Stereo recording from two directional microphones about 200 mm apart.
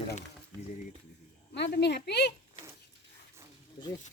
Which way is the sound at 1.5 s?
60° left (ahead or behind).